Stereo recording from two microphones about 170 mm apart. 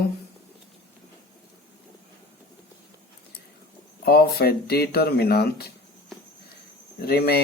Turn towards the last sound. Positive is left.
turn(degrees=70)  # may be behind; listen again after turning